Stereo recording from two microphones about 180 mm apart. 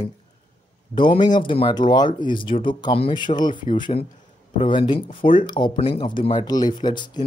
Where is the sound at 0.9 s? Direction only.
25° left (ahead or behind).